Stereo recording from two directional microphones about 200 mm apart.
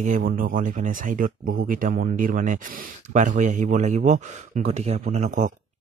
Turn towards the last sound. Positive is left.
turn(degrees=-35)  # may be behind; listen again after turning